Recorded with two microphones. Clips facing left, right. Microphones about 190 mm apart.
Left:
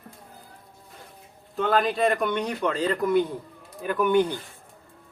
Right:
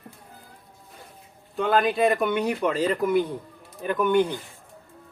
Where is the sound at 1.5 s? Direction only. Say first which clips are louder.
Right 1 dB; centre (ahead or behind).